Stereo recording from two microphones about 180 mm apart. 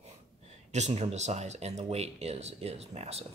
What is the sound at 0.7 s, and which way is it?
Speech, 40° right (ahead or behind).